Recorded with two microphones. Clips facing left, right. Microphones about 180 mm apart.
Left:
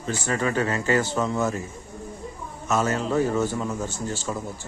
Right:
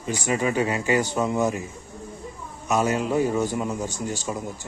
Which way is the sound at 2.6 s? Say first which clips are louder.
Right 1 dB; 15° right (ahead or behind).